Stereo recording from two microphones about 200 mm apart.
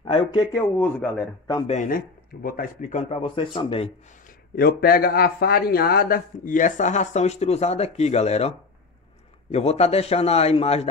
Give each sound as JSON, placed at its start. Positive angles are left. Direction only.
{"t": 0.0, "sound": "a man's voice", "side_deg": 25}
{"t": 1.7, "sound": "speech", "side_deg": 40}
{"t": 4.6, "sound": "speech", "side_deg": 50}